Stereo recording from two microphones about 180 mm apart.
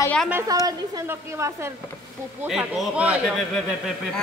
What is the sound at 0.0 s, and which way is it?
Speech, 5° left (ahead or behind).